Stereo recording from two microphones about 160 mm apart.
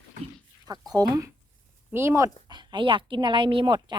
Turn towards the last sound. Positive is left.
turn(degrees=-30)  # may be behind; listen again after turning